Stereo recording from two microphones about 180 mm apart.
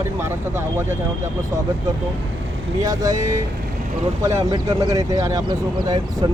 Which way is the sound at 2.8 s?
20° right (ahead or behind).